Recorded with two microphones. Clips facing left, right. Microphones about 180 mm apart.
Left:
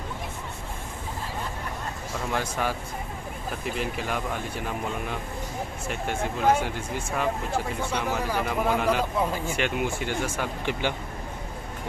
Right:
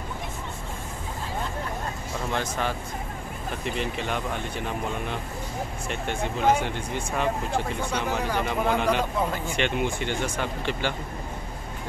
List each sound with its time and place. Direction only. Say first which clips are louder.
2.3 s speech: even; 10° left (ahead or behind)
5.9 s speech: left 1 dB; 5° left (ahead or behind)